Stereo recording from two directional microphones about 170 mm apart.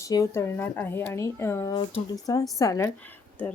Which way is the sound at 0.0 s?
20° left (ahead or behind).